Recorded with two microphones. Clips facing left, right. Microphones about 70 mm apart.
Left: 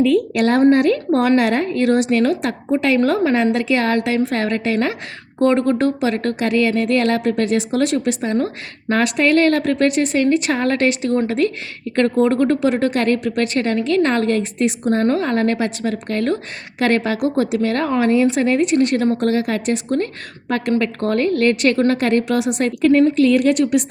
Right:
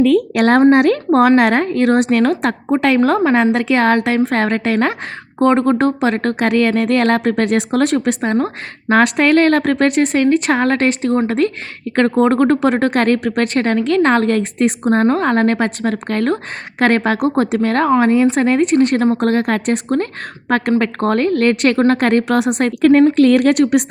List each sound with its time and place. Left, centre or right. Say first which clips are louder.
0.0 s speech: right 3 dB; right
5.4 s a woman's voice: right 3 dB; right